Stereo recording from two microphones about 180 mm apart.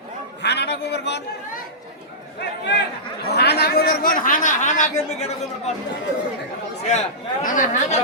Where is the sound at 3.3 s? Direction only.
65° left (ahead or behind); by 5.7 s 40° left (ahead or behind).